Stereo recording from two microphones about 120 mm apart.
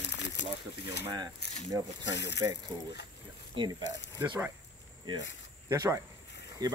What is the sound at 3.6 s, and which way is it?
Speech, 45° right (ahead or behind).